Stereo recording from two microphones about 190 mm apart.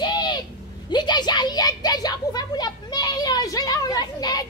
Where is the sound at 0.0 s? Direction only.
20° left (ahead or behind).